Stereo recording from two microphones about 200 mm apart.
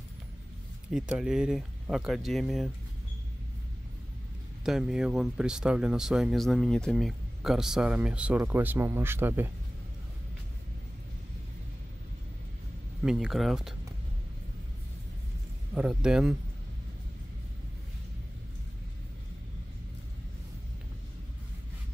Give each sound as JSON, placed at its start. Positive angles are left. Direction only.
{"t": 0.9, "sound": "speech", "side_deg": -5}
{"t": 4.6, "sound": "speech", "side_deg": -5}
{"t": 13.0, "sound": "speech", "side_deg": -5}
{"t": 15.7, "sound": "speech", "side_deg": -5}